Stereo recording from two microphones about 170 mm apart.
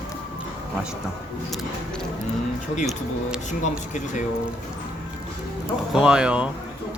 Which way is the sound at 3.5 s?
45° left (ahead or behind).